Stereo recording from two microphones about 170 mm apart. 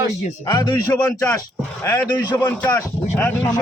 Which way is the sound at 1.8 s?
20° left (ahead or behind).